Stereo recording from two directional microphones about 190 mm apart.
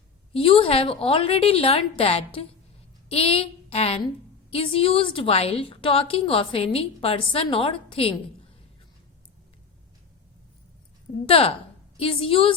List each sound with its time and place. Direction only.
0.3 s a woman's voice: 30° left (ahead or behind)
11.3 s a woman's voice: 30° left (ahead or behind)